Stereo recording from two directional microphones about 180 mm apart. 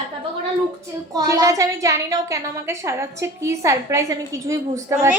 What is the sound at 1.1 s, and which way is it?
A woman's voice, 20° right (ahead or behind).